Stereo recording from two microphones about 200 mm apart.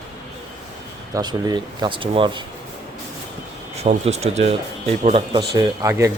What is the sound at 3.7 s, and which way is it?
Speech, 35° right (ahead or behind).